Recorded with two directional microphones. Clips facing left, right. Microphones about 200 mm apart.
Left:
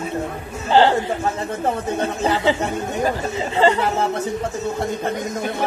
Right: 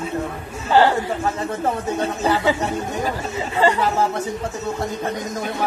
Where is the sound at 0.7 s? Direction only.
25° left (ahead or behind).